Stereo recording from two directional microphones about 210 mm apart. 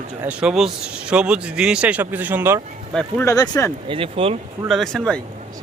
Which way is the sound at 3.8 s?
25° right (ahead or behind).